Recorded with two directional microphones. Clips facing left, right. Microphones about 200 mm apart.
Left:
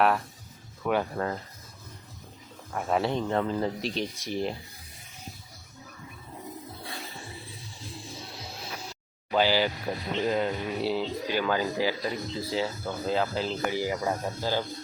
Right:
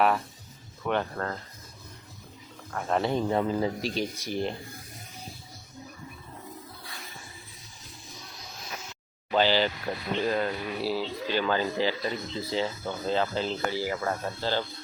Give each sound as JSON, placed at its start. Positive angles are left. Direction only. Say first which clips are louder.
{"t": 0.9, "sound": "speech", "louder": "left 2 dB", "side_deg": 10}
{"t": 2.7, "sound": "speech", "louder": "even", "side_deg": 5}
{"t": 7.9, "sound": "music", "louder": "left 5 dB", "side_deg": 30}
{"t": 9.3, "sound": "speech", "louder": "even", "side_deg": 10}
{"t": 10.2, "sound": "mantra", "louder": "left 2 dB", "side_deg": 20}
{"t": 11.3, "sound": "speech", "louder": "right 1 dB", "side_deg": 10}
{"t": 13.7, "sound": "speech", "louder": "left 1 dB", "side_deg": 15}